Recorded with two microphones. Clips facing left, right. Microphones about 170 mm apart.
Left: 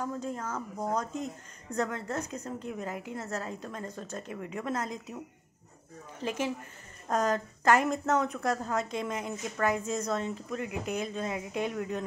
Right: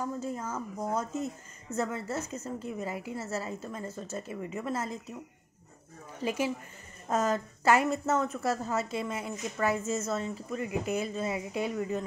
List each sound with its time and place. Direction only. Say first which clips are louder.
0.0 s a woman's voice: even; 10° right (ahead or behind)
6.2 s a woman's voice: right 2 dB; 10° right (ahead or behind)